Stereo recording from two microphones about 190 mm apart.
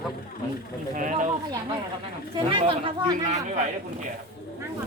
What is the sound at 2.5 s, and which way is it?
Speech, 25° right (ahead or behind).